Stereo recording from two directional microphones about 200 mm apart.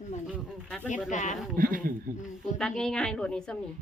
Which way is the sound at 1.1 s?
40° left (ahead or behind).